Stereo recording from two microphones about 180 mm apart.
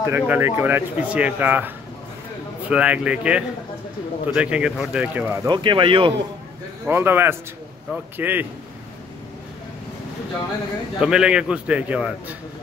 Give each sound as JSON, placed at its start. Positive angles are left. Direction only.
{"t": 0.0, "sound": "speech", "side_deg": -15}
{"t": 2.7, "sound": "speech", "side_deg": -5}
{"t": 5.5, "sound": "speech", "side_deg": -25}
{"t": 6.9, "sound": "speech", "side_deg": -10}
{"t": 11.0, "sound": "a man's voice", "side_deg": -5}